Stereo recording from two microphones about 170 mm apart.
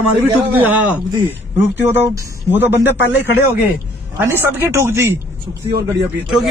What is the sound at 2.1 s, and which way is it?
A man's voice, 15° right (ahead or behind).